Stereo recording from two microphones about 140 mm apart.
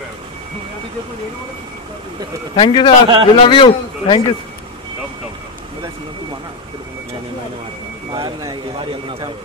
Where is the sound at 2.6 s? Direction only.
40° left (ahead or behind).